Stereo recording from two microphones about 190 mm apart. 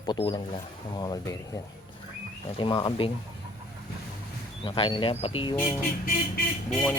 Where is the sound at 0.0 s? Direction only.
25° left (ahead or behind).